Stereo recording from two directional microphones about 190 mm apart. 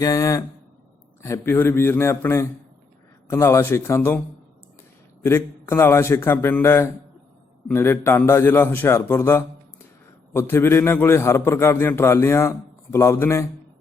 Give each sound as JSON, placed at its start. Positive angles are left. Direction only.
{"t": 0.0, "sound": "a man's voice", "side_deg": 20}
{"t": 5.2, "sound": "a man's voice", "side_deg": 15}